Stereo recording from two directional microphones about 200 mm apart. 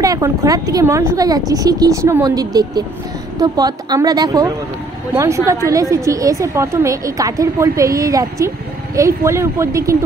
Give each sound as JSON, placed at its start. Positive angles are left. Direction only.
{"t": 0.0, "sound": "a woman's voice", "side_deg": -15}